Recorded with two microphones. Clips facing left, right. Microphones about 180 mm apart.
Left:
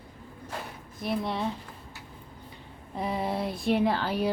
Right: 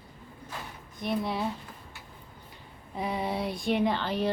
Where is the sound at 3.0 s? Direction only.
Centre (ahead or behind).